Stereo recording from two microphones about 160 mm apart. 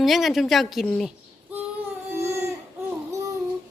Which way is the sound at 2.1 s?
15° right (ahead or behind).